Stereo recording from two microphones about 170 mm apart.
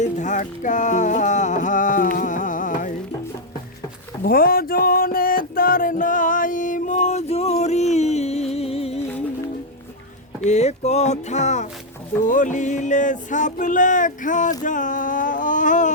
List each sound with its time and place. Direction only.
0.0 s music: 45° left (ahead or behind)
4.2 s music: 60° left (ahead or behind); by 9.0 s 35° left (ahead or behind)
10.4 s music: 40° left (ahead or behind)
14.6 s a sound: 50° left (ahead or behind)